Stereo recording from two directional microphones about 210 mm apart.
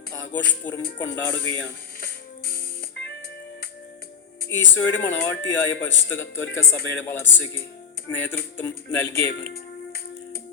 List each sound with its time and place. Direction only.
0.1 s music: 10° left (ahead or behind)
0.6 s speech: 10° left (ahead or behind)
2.5 s music: 55° left (ahead or behind)
4.7 s speech: 10° left (ahead or behind)